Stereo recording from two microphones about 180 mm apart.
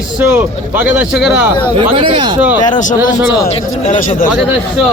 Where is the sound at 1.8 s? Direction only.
30° right (ahead or behind).